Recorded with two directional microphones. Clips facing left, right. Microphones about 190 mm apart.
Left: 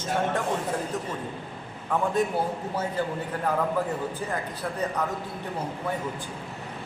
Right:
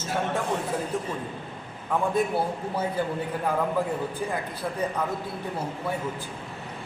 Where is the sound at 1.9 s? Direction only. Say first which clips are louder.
Even; 10° right (ahead or behind).